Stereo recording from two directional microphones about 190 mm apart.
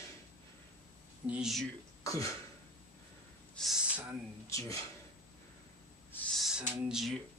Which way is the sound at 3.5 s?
Centre (ahead or behind).